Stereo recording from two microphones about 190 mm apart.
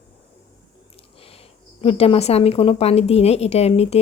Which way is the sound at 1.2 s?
30° left (ahead or behind).